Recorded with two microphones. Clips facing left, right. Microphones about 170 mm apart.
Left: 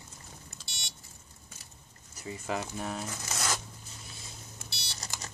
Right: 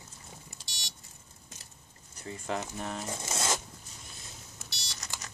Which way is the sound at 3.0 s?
25° right (ahead or behind).